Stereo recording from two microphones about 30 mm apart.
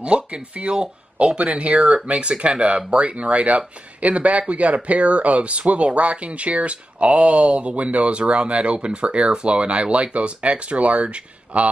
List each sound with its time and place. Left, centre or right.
0.0 s speech: right